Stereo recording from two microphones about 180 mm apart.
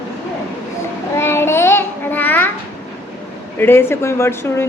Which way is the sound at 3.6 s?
15° left (ahead or behind).